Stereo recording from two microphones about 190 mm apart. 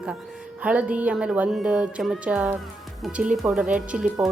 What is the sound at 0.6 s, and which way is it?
A woman's voice, 5° right (ahead or behind).